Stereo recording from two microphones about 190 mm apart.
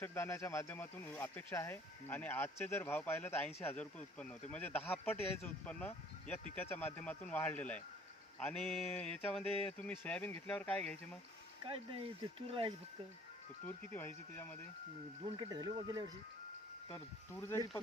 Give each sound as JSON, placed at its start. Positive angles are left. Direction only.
{"t": 0.0, "sound": "speech", "side_deg": 15}
{"t": 9.4, "sound": "speech", "side_deg": 30}
{"t": 9.7, "sound": "speech", "side_deg": 10}
{"t": 11.6, "sound": "speech", "side_deg": -30}
{"t": 13.7, "sound": "speech", "side_deg": 10}
{"t": 15.4, "sound": "speech", "side_deg": -20}
{"t": 16.9, "sound": "speech", "side_deg": 15}